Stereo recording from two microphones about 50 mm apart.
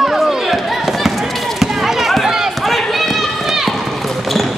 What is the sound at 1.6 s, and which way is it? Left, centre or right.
Run, centre.